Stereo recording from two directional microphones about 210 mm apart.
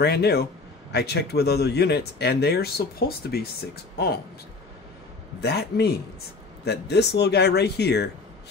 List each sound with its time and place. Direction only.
0.0 s speech: 50° left (ahead or behind)
5.4 s speech: 50° left (ahead or behind)